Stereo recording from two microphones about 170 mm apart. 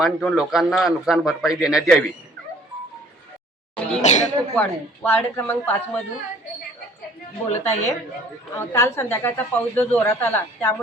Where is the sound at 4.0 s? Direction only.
45° left (ahead or behind).